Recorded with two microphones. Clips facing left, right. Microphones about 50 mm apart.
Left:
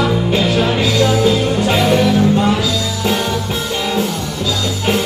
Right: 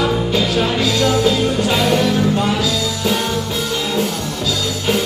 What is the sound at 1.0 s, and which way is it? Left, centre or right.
Music, centre.